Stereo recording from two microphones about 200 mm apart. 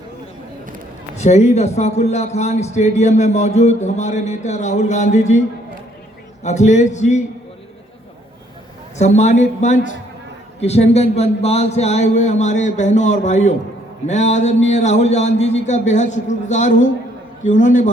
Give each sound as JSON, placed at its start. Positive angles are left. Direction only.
{"t": 1.1, "sound": "a man's voice", "side_deg": 35}
{"t": 6.4, "sound": "a man's voice", "side_deg": 35}
{"t": 9.0, "sound": "a man's voice", "side_deg": 35}